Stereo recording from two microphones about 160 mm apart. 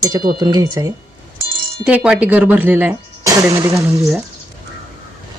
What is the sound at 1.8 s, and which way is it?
Speech, 5° right (ahead or behind).